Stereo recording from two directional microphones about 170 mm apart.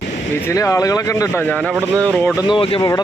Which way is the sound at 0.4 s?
20° left (ahead or behind).